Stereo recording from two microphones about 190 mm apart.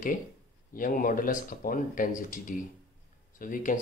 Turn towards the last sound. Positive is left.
turn(degrees=45)  # may be behind; listen again after turning